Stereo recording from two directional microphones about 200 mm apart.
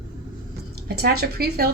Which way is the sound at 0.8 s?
50° right (ahead or behind).